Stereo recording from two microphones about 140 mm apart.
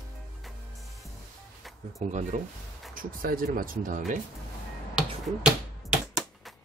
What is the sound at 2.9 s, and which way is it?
Speech, 85° right.